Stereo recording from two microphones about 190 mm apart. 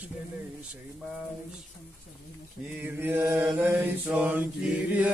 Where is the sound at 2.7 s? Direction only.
10° right (ahead or behind).